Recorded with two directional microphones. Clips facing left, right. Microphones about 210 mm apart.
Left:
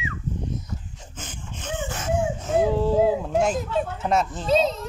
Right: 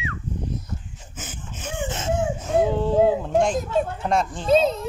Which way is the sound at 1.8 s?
25° right (ahead or behind).